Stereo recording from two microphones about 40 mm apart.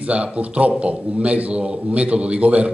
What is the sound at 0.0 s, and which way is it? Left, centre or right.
A man's voice, right.